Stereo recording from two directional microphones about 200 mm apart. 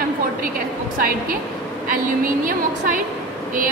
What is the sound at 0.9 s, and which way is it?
Speech, 45° right (ahead or behind).